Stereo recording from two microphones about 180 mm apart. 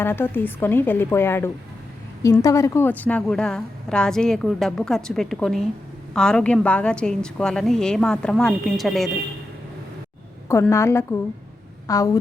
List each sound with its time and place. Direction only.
0.0 s a woman's voice: 10° left (ahead or behind)
10.5 s a woman's voice: 15° left (ahead or behind)